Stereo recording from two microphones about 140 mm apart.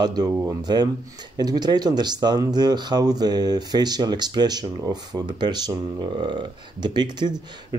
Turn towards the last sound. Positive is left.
turn(degrees=-30)  # may be behind; listen again after turning